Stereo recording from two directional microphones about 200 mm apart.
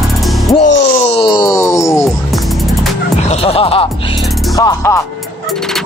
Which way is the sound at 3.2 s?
30° left (ahead or behind).